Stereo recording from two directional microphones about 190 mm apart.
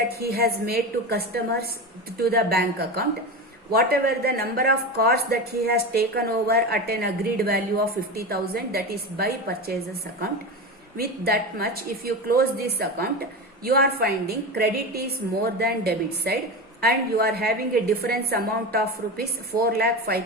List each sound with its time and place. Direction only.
0.2 s speech: 55° right (ahead or behind)
11.3 s a woman's voice: 55° right (ahead or behind)